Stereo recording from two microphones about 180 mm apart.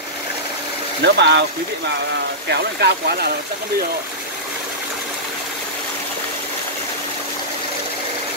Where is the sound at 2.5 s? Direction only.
65° right (ahead or behind).